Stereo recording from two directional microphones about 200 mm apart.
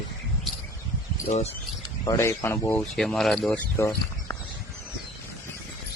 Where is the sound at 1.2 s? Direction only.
35° left (ahead or behind).